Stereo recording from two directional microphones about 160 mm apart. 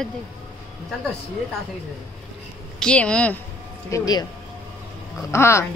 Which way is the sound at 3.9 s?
25° left (ahead or behind).